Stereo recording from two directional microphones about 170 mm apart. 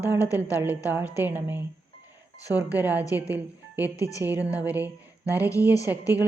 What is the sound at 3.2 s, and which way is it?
Speech, 10° right (ahead or behind).